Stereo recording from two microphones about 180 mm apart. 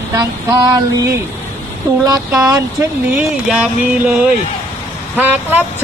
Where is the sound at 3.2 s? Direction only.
5° right (ahead or behind).